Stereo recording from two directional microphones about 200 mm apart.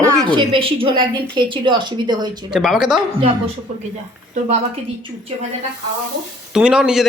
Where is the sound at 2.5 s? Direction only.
Centre (ahead or behind).